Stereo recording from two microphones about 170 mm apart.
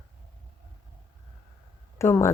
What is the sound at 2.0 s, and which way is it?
Speech, 15° left (ahead or behind).